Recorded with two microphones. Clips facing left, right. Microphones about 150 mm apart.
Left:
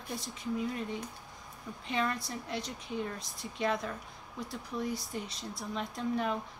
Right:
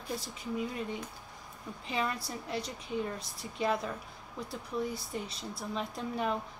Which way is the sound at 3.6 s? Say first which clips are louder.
Right 1 dB; 5° right (ahead or behind).